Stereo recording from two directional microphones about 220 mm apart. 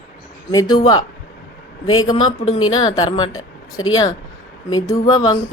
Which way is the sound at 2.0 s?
20° left (ahead or behind).